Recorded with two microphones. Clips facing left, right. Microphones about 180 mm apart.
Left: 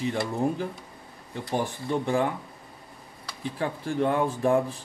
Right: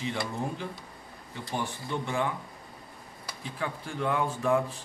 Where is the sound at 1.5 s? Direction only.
40° left (ahead or behind).